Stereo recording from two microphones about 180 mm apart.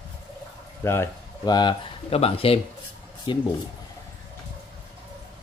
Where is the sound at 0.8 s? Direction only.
15° left (ahead or behind).